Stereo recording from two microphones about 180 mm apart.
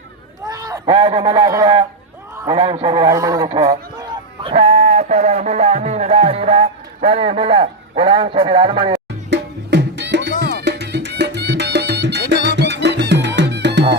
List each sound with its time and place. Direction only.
0.4 s speech: 20° right (ahead or behind)
2.3 s a sound: 15° right (ahead or behind)
2.6 s speech: 30° right (ahead or behind)
9.3 s music: 75° right (ahead or behind)